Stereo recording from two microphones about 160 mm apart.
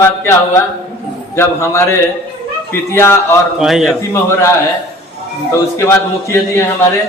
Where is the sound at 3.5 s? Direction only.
5° right (ahead or behind).